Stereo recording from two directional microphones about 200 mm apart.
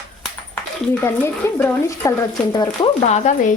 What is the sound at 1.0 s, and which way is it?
A woman's voice, 10° left (ahead or behind).